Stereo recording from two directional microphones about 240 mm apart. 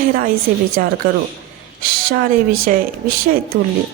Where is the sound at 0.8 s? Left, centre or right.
Right.